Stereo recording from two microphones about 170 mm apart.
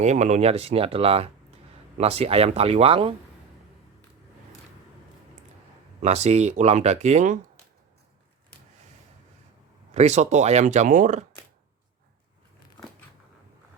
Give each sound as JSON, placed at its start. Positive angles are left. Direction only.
{"t": 0.0, "sound": "speech", "side_deg": -45}
{"t": 6.0, "sound": "speech", "side_deg": -40}
{"t": 9.9, "sound": "speech", "side_deg": -40}